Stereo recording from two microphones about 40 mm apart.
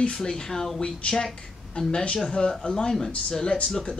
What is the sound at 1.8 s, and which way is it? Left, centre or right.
Speech, left.